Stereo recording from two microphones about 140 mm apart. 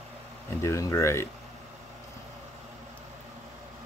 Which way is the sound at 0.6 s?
20° left (ahead or behind).